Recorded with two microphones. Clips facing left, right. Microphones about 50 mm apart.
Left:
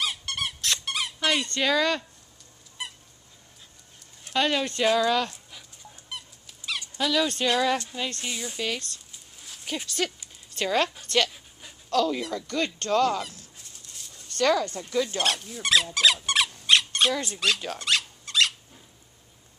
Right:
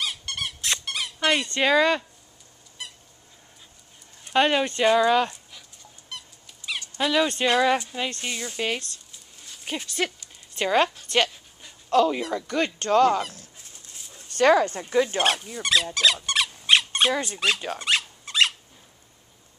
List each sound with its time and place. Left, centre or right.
0.0 s squeak: centre
1.2 s speech: centre
4.3 s speech: right
4.6 s speech: centre
7.0 s speech: right
9.8 s speech: centre
11.9 s speech: right
14.0 s zipper: centre
14.4 s speech: right
15.4 s speech: centre
16.5 s squeak: centre